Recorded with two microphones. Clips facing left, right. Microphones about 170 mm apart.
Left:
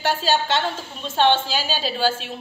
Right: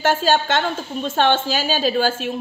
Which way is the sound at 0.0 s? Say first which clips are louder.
Right 4 dB; 50° right (ahead or behind).